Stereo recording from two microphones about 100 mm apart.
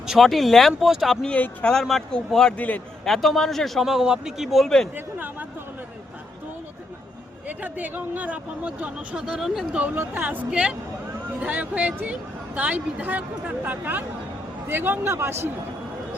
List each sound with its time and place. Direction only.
0.1 s speech: centre (ahead or behind)
3.1 s speech: centre (ahead or behind)
4.9 s a sound: 15° right (ahead or behind)
7.4 s speech: 15° right (ahead or behind)
9.8 s speech: 20° right (ahead or behind)